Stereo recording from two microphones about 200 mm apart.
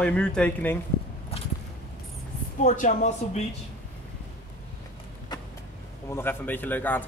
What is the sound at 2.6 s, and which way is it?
Speech, 40° left (ahead or behind).